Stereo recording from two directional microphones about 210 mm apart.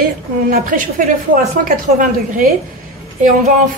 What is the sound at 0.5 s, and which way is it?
A woman's voice, 40° right (ahead or behind).